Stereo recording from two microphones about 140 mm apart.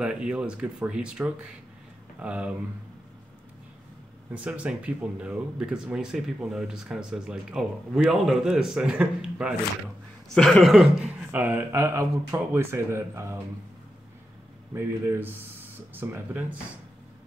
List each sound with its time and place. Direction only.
0.0 s speech: 5° right (ahead or behind)
4.3 s speech: 10° right (ahead or behind)
14.7 s speech: 15° right (ahead or behind)